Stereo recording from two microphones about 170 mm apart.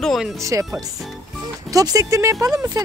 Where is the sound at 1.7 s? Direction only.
20° right (ahead or behind).